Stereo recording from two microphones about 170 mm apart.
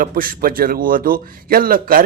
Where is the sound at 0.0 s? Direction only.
55° right (ahead or behind).